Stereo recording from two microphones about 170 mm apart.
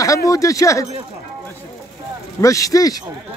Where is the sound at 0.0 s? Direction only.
20° left (ahead or behind).